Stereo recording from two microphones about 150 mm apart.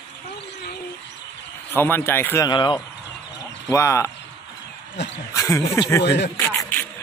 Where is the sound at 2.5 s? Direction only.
30° left (ahead or behind).